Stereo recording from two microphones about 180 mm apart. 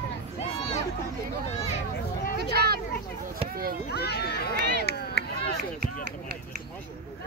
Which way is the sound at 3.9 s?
60° left (ahead or behind).